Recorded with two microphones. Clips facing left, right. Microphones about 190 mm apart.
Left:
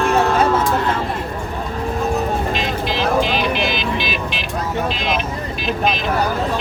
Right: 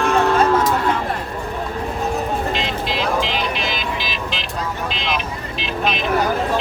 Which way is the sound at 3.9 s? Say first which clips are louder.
Left 3 dB; 60° left (ahead or behind).